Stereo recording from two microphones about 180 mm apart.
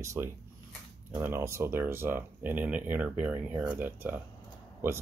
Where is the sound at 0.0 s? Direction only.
15° right (ahead or behind).